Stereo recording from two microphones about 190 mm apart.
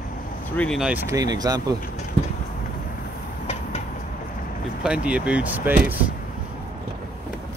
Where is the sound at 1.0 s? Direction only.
20° right (ahead or behind).